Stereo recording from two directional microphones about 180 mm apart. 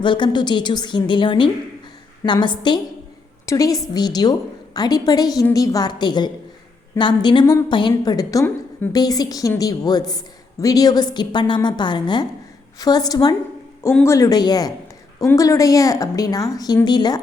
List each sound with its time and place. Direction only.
0.0 s a woman's voice: 25° left (ahead or behind)